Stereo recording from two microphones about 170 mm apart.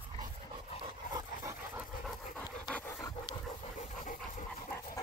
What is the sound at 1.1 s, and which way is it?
Dog, 15° right (ahead or behind).